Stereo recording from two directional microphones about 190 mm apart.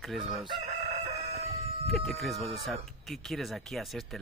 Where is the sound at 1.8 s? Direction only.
Centre (ahead or behind).